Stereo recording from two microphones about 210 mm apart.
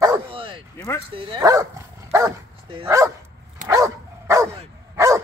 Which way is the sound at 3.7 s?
15° right (ahead or behind).